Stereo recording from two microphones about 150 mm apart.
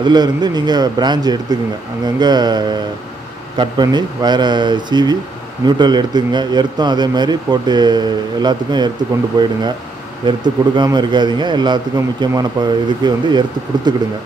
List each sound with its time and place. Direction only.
0.0 s speech: 30° right (ahead or behind)